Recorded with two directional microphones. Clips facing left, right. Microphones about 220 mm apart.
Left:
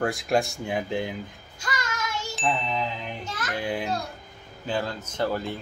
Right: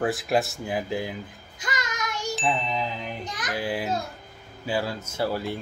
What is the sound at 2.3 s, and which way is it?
Wind chime, centre (ahead or behind).